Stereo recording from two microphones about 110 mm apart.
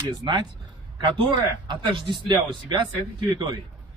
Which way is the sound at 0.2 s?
35° right (ahead or behind).